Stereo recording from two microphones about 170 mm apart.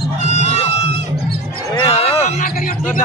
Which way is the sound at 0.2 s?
40° left (ahead or behind).